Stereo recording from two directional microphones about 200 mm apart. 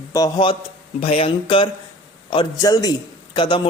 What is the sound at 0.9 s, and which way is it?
A man's voice, 30° left (ahead or behind).